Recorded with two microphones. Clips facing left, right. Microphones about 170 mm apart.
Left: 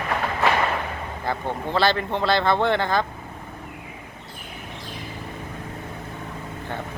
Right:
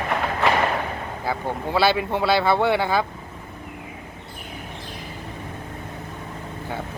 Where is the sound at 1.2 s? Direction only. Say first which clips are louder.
Even; 10° right (ahead or behind).